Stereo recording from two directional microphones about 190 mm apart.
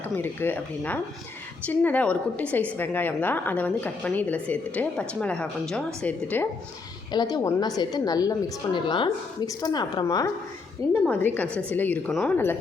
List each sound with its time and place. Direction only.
0.2 s a woman's voice: 10° left (ahead or behind)
7.1 s a woman's voice: 20° left (ahead or behind)
11.0 s a woman's voice: 10° left (ahead or behind)